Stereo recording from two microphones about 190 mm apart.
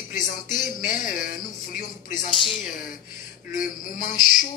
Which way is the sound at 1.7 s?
45° left (ahead or behind).